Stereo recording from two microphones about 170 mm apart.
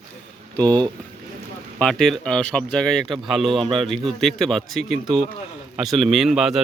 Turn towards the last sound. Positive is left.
turn(degrees=0)  # may be behind; listen again after turning